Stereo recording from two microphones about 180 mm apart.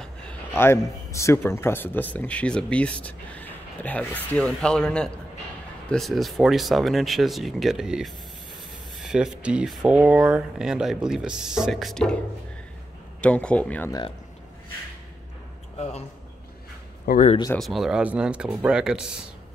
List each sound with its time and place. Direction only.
0.0 s speech: 5° left (ahead or behind)
13.2 s speech: 5° left (ahead or behind)
17.0 s speech: 50° left (ahead or behind)
17.6 s speech: centre (ahead or behind)